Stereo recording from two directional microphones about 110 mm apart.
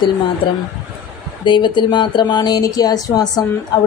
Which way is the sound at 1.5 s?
45° left (ahead or behind).